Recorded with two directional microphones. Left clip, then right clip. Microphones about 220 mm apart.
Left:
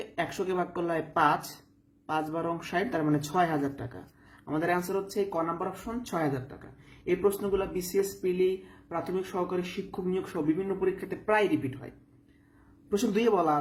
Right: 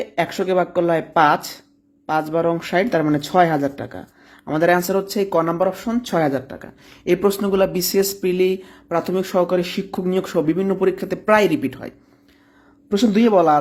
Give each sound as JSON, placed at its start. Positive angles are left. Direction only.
{"t": 0.0, "sound": "speech", "side_deg": -30}
{"t": 7.0, "sound": "speech", "side_deg": -50}
{"t": 12.9, "sound": "speech", "side_deg": -30}